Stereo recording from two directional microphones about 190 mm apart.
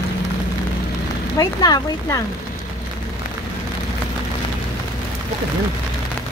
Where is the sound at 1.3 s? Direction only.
20° left (ahead or behind).